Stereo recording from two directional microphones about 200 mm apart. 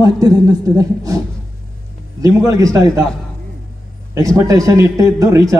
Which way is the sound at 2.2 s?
15° right (ahead or behind).